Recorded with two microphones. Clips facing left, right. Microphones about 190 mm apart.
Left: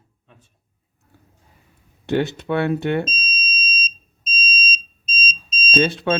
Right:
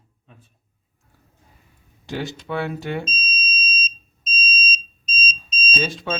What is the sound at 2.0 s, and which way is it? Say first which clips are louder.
Speech: left 8 dB; 65° left (ahead or behind).